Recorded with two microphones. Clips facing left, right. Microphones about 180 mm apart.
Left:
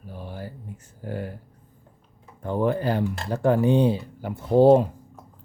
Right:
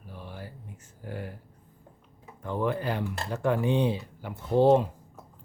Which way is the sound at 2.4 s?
40° left (ahead or behind).